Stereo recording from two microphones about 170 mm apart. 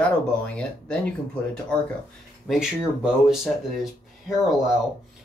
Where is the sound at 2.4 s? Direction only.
5° right (ahead or behind).